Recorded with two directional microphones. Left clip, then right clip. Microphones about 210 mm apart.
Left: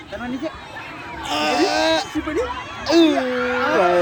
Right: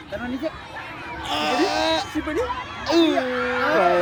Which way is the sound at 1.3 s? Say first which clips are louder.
Left 3 dB; 40° left (ahead or behind).